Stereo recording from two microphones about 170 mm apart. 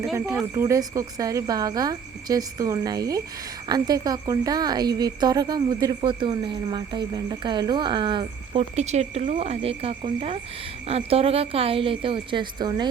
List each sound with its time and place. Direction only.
0.5 s speech: 20° right (ahead or behind)